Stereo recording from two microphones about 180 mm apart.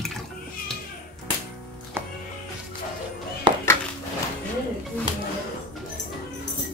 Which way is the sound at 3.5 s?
25° right (ahead or behind).